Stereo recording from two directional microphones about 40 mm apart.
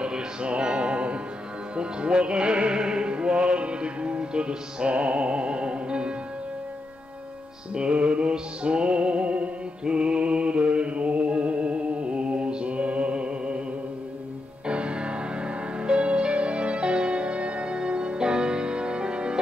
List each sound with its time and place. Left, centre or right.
0.0 s music: right
7.7 s music: right
14.7 s music: right